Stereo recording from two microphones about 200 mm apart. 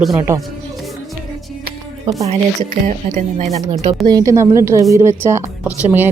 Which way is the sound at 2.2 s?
35° right (ahead or behind).